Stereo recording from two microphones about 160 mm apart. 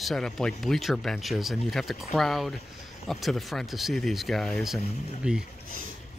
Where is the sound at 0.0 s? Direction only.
Centre (ahead or behind).